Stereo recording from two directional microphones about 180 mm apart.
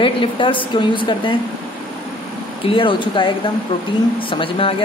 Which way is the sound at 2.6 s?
30° left (ahead or behind).